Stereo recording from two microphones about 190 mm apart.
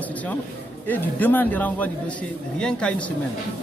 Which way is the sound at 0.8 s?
10° left (ahead or behind).